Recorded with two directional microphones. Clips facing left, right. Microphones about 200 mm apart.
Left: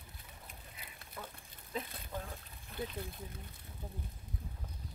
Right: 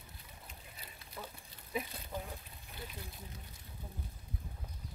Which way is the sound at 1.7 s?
10° right (ahead or behind).